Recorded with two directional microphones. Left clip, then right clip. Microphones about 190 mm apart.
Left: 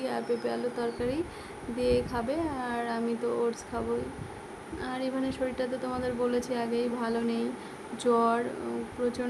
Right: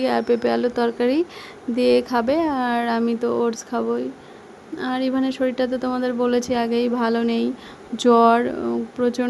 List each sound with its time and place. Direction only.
0.0 s speech: 45° right (ahead or behind)